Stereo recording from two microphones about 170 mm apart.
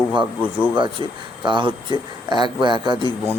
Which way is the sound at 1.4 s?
25° right (ahead or behind).